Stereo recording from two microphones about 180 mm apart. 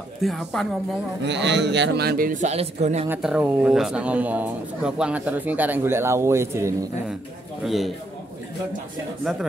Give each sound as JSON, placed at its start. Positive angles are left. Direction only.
{"t": 0.2, "sound": "speech", "side_deg": 0}
{"t": 1.2, "sound": "a man's voice", "side_deg": -75}
{"t": 3.1, "sound": "speech", "side_deg": -5}
{"t": 7.6, "sound": "speech", "side_deg": 0}
{"t": 9.2, "sound": "speech", "side_deg": 0}